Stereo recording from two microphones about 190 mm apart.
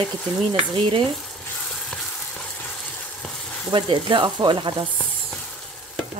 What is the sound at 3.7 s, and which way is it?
A woman's voice, 25° right (ahead or behind).